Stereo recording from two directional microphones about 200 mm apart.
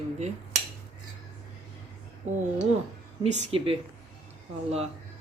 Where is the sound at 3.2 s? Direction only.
30° right (ahead or behind).